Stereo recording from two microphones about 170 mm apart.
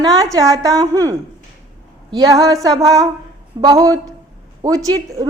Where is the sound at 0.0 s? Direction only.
20° right (ahead or behind).